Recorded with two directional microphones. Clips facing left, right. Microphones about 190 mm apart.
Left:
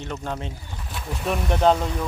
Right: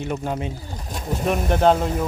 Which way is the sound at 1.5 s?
5° right (ahead or behind).